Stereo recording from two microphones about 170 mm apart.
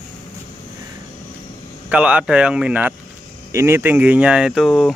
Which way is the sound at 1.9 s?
5° right (ahead or behind).